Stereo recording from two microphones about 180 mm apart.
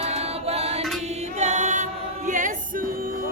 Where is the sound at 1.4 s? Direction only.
40° right (ahead or behind).